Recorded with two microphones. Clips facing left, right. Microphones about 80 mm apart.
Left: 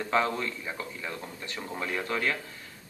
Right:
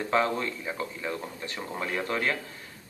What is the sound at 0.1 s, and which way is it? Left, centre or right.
A man's voice, centre.